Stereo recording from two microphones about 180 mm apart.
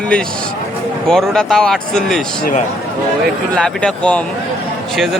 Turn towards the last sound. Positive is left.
turn(degrees=0)  # may be behind; listen again after turning